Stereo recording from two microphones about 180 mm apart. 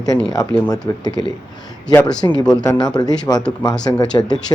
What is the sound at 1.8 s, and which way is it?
Speech, 20° left (ahead or behind).